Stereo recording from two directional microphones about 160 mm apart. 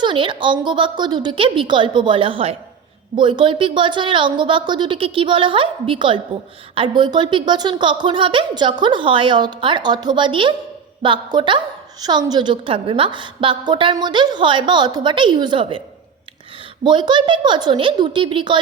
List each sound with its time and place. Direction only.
0.0 s a woman's voice: 30° right (ahead or behind)
16.8 s a woman's voice: 30° right (ahead or behind)